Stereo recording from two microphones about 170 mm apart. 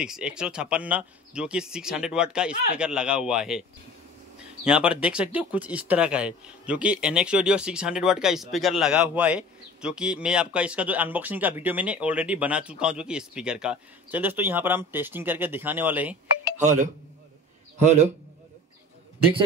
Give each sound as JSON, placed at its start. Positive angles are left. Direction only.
{"t": 0.0, "sound": "speech", "side_deg": -5}
{"t": 4.6, "sound": "speech", "side_deg": -5}
{"t": 16.5, "sound": "a man's voice", "side_deg": -45}